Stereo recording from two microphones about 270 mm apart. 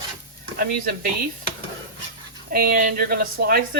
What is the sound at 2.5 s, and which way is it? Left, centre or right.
Speech, right.